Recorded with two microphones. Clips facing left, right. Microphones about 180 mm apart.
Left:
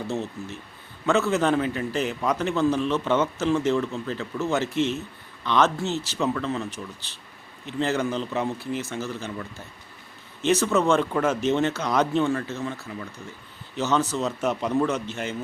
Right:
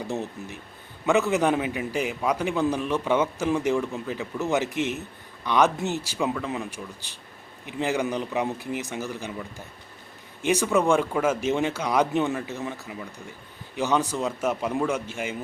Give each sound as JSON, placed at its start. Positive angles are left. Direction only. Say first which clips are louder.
{"t": 0.1, "sound": "a man's voice", "louder": "left 1 dB", "side_deg": -15}